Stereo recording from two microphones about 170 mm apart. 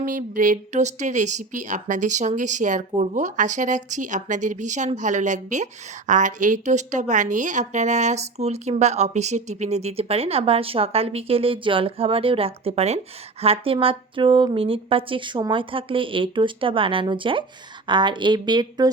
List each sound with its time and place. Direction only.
0.0 s speech: 50° right (ahead or behind); by 18.9 s 25° right (ahead or behind)